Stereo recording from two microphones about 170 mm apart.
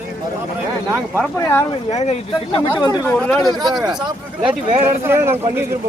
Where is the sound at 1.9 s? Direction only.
40° left (ahead or behind).